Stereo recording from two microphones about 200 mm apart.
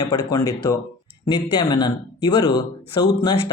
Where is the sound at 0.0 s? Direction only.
20° left (ahead or behind).